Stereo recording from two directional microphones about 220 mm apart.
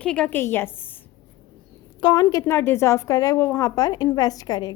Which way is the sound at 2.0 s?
15° left (ahead or behind).